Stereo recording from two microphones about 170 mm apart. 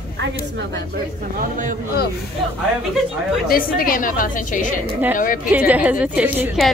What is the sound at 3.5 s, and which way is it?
A woman's voice, 55° left (ahead or behind).